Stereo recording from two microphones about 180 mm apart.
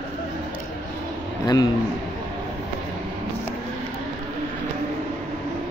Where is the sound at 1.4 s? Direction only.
20° left (ahead or behind).